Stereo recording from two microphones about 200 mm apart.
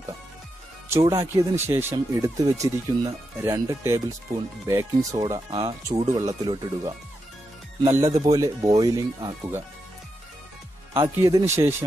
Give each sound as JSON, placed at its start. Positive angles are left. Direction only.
{"t": 0.8, "sound": "speech", "side_deg": -15}
{"t": 11.0, "sound": "speech", "side_deg": -15}